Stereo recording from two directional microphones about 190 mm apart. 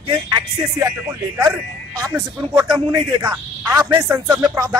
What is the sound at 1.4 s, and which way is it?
A man's voice, 20° right (ahead or behind).